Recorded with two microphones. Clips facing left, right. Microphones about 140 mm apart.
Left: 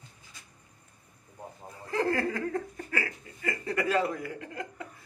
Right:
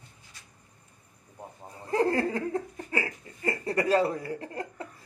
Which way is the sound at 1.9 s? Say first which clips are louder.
Right 3 dB; 30° right (ahead or behind).